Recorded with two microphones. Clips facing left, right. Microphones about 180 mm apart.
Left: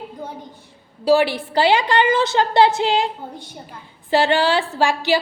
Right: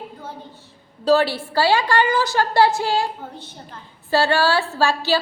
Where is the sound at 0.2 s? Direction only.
15° left (ahead or behind).